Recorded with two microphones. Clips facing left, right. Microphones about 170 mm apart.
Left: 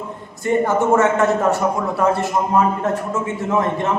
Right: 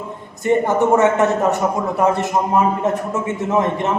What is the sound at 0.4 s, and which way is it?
A man's voice, 20° right (ahead or behind).